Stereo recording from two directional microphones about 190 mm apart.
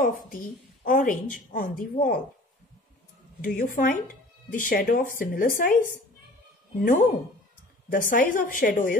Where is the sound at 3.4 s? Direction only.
50° left (ahead or behind).